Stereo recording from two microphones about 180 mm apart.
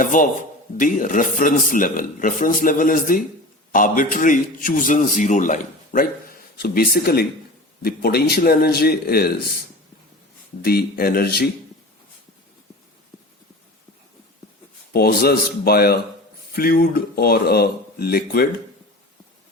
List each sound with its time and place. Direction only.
0.0 s a man's voice: 45° left (ahead or behind)
6.6 s speech: 55° left (ahead or behind)
10.6 s speech: 55° left (ahead or behind)
14.9 s speech: 60° left (ahead or behind)